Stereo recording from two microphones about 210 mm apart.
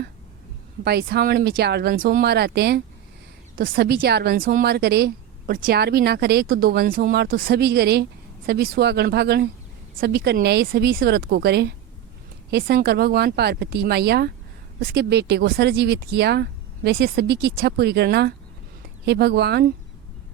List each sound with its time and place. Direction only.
0.9 s a woman's voice: 50° right (ahead or behind)